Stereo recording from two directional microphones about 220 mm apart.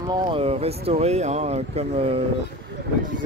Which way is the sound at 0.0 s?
20° right (ahead or behind).